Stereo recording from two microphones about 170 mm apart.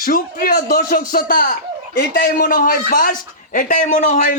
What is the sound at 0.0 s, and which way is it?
A man's voice, 55° left (ahead or behind).